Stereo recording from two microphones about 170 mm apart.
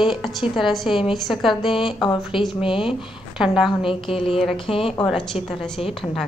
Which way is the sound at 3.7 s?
30° left (ahead or behind).